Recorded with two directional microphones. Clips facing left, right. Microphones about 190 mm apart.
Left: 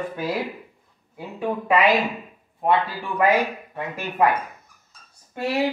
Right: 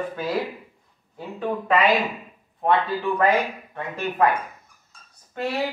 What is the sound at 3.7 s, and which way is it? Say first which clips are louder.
Speech: right 1 dB; 10° left (ahead or behind).